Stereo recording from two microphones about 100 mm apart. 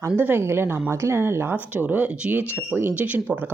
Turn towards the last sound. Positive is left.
turn(degrees=-15)  # may be behind; listen again after turning